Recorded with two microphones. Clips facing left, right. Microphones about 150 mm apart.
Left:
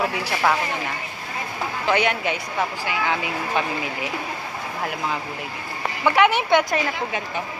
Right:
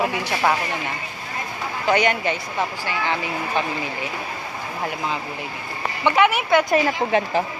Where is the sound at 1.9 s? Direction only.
Centre (ahead or behind).